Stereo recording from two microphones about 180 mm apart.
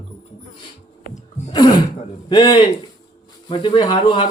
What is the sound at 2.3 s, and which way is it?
A man's voice, 25° left (ahead or behind).